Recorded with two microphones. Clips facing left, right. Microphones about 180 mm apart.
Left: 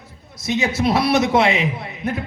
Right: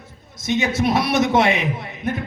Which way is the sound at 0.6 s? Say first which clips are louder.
Left 2 dB; 30° left (ahead or behind).